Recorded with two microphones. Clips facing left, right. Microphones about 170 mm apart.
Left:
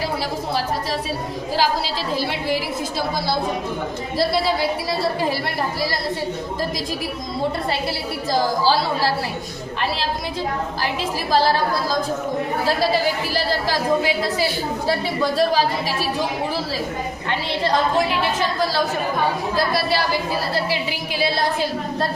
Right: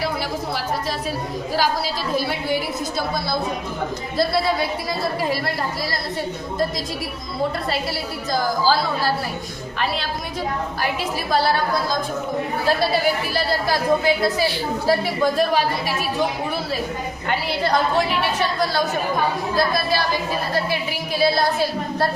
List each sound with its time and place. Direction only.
11.3 s a woman's voice: 35° left (ahead or behind)
15.4 s a woman's voice: 30° left (ahead or behind)